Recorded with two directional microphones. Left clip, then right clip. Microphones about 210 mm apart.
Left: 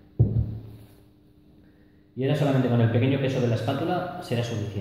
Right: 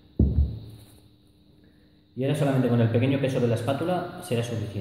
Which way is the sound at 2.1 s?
15° right (ahead or behind).